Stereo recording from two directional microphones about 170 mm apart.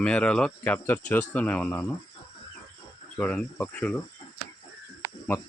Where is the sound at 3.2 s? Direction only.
10° left (ahead or behind).